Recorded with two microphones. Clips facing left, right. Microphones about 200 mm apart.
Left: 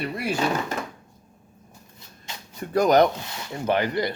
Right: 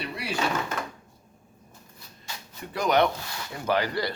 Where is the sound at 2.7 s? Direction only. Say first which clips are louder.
Left 5 dB; 40° left (ahead or behind).